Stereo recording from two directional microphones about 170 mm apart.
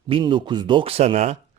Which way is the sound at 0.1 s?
30° right (ahead or behind).